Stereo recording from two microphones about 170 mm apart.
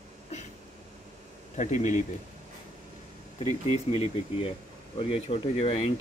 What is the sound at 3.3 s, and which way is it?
Speech, 40° left (ahead or behind).